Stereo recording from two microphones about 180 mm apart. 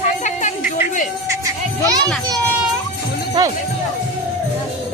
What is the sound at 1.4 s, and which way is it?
Music, 20° right (ahead or behind).